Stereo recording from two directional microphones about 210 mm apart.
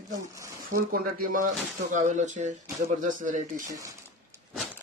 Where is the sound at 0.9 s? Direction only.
40° right (ahead or behind).